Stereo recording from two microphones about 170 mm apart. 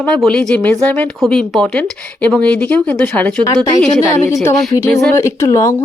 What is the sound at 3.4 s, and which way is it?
A woman's voice, 20° left (ahead or behind).